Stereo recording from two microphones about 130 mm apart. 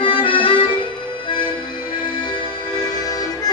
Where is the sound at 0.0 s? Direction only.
45° left (ahead or behind).